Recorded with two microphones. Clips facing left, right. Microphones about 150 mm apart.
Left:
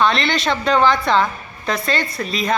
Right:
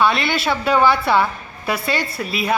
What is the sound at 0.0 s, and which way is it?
A woman's voice, 5° right (ahead or behind).